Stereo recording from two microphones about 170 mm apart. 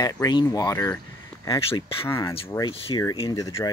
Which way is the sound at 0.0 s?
25° left (ahead or behind).